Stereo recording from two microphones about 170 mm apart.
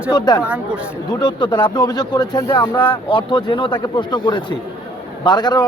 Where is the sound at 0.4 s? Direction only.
10° right (ahead or behind).